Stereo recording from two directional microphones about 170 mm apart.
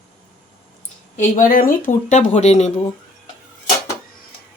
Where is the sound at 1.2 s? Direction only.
50° left (ahead or behind).